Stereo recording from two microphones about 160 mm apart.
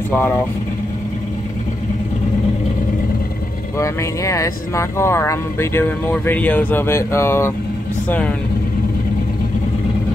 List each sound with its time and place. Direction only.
3.7 s speech: 20° left (ahead or behind)